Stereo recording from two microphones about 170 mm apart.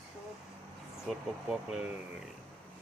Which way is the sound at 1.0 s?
5° right (ahead or behind).